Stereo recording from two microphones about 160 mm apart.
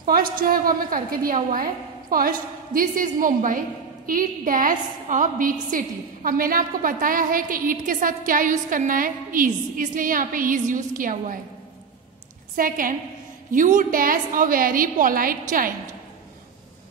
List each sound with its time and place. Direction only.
0.0 s a woman's voice: 65° right (ahead or behind)
12.5 s a woman's voice: 60° right (ahead or behind)